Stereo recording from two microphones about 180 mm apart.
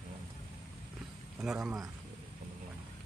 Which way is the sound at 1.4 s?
5° right (ahead or behind).